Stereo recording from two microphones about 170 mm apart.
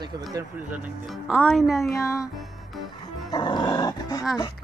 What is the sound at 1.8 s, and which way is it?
Music, 15° left (ahead or behind).